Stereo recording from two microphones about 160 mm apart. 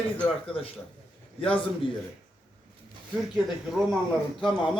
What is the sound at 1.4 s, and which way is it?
Speech, 35° left (ahead or behind).